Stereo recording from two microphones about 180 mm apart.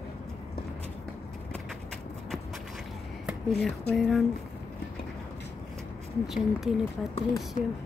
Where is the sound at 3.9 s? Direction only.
Centre (ahead or behind).